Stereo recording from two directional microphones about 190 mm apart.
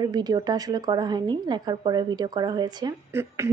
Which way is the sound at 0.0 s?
20° right (ahead or behind).